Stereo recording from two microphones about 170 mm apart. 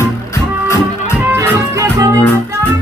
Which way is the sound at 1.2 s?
15° right (ahead or behind).